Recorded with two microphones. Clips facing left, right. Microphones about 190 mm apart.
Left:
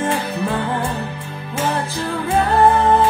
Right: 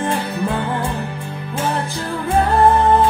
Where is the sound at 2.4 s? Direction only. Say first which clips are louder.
Even; 10° left (ahead or behind).